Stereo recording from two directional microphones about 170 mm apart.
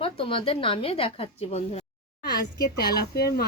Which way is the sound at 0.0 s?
30° left (ahead or behind).